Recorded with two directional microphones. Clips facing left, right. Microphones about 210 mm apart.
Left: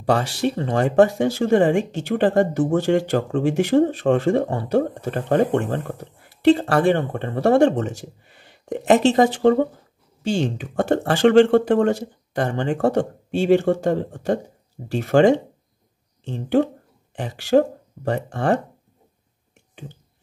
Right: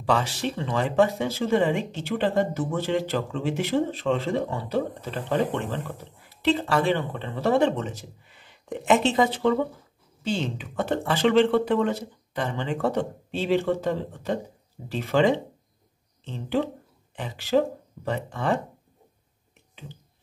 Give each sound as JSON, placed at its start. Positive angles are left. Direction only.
{"t": 0.0, "sound": "speech", "side_deg": 45}